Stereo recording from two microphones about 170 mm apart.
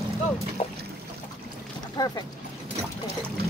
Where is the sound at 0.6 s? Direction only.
35° left (ahead or behind).